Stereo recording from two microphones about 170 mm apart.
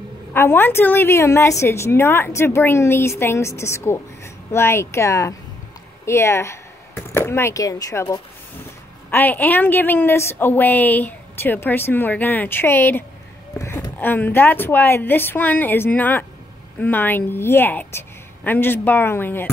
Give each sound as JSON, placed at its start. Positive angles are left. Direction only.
{"t": 0.3, "sound": "a woman's voice", "side_deg": 15}